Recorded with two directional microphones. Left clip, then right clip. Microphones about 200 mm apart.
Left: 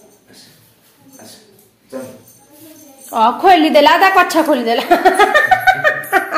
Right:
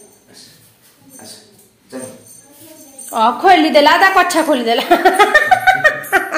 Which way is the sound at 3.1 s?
10° left (ahead or behind).